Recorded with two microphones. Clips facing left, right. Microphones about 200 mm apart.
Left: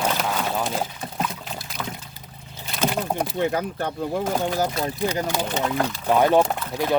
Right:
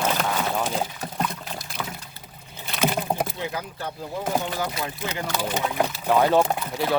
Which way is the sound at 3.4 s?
55° left (ahead or behind).